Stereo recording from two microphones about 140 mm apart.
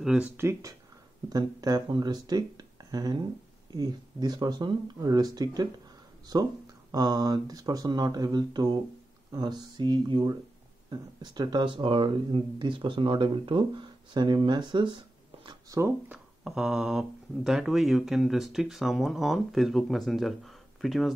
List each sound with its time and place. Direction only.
0.0 s speech: 5° right (ahead or behind)
0.4 s speech: 20° right (ahead or behind)
15.7 s speech: 20° right (ahead or behind)
16.4 s speech: 5° right (ahead or behind)